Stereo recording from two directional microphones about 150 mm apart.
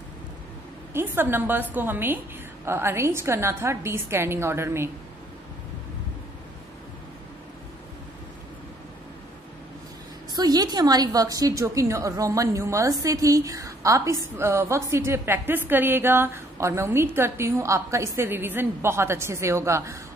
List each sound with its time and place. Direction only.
0.9 s a woman's voice: 15° right (ahead or behind)
10.3 s a woman's voice: 25° right (ahead or behind)